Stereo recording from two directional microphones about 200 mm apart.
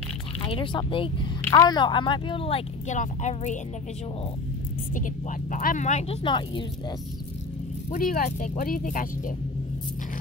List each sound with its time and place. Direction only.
0.4 s speech: 25° left (ahead or behind)
4.9 s speech: 40° left (ahead or behind); by 6.6 s 25° left (ahead or behind)
7.9 s speech: 40° left (ahead or behind)